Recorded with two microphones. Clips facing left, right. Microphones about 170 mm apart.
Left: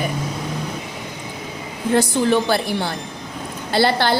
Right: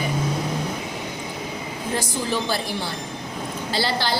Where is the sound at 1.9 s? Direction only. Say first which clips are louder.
Left 9 dB; 65° left (ahead or behind).